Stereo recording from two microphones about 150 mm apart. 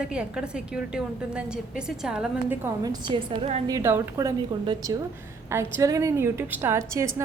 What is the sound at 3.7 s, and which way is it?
A woman's voice, 20° right (ahead or behind).